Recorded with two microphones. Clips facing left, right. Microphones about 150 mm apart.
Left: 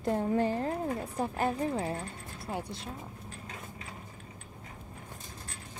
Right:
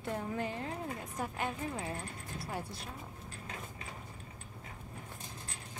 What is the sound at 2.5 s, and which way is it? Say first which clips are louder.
Speech: left 5 dB; 20° left (ahead or behind).